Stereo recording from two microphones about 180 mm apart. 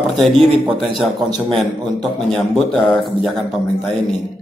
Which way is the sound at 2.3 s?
Centre (ahead or behind).